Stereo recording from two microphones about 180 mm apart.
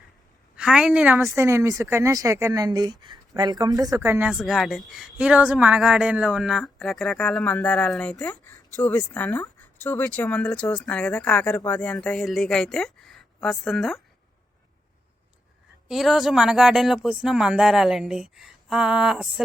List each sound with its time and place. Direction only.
0.5 s a woman's voice: 5° right (ahead or behind)
15.9 s speech: centre (ahead or behind)